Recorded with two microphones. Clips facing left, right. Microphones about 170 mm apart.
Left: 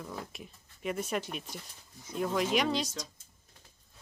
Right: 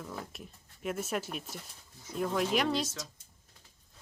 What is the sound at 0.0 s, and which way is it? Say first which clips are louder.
Speech: even; centre (ahead or behind).